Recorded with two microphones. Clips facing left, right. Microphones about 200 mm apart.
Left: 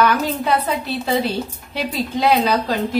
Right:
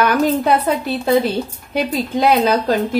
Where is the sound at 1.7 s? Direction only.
50° right (ahead or behind).